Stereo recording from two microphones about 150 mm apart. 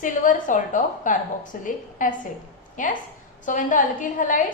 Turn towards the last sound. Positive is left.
turn(degrees=60)  # may be behind; listen again after turning